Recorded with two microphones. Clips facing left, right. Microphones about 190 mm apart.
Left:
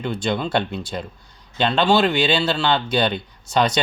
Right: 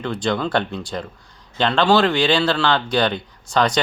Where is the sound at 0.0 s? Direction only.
25° left (ahead or behind).